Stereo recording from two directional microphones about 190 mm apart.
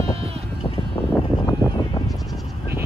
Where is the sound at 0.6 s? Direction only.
30° left (ahead or behind).